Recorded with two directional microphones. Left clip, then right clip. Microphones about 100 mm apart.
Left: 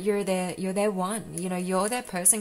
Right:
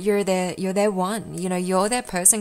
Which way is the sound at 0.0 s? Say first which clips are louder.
Right 5 dB; 40° right (ahead or behind).